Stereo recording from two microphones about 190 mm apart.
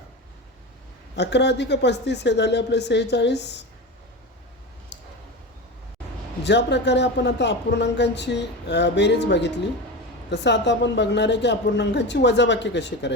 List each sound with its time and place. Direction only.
1.1 s speech: 65° left (ahead or behind)
6.4 s speech: 65° left (ahead or behind)